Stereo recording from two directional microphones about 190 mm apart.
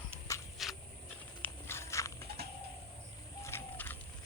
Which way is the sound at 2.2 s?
55° right (ahead or behind).